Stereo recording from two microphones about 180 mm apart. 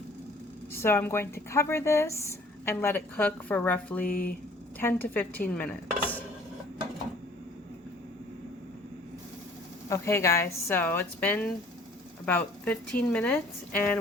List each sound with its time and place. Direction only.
0.7 s a woman's voice: 15° left (ahead or behind)
4.0 s speech: 50° left (ahead or behind)
4.8 s a woman's voice: 10° left (ahead or behind)
5.5 s dishes: 10° left (ahead or behind)
9.9 s a woman's voice: 15° left (ahead or behind)